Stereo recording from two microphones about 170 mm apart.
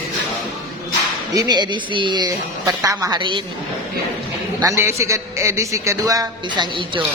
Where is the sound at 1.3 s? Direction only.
25° right (ahead or behind).